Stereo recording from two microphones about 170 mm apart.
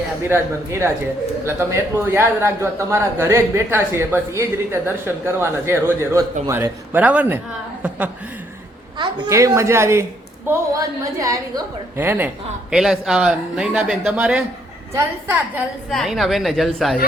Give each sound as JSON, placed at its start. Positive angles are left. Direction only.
{"t": 0.3, "sound": "a man's voice", "side_deg": -15}
{"t": 15.9, "sound": "a man's voice", "side_deg": 0}